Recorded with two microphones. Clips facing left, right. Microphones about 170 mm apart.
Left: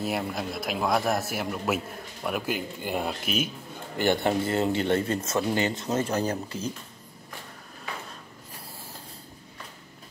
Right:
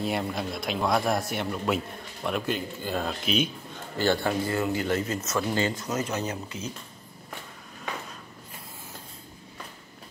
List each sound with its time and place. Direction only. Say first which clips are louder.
0.0 s a man's voice: right 1 dB; 5° left (ahead or behind)
4.0 s speech: left 1 dB; 20° left (ahead or behind)